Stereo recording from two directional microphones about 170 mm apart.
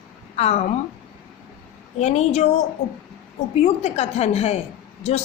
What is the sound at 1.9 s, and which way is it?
Speech, 40° left (ahead or behind).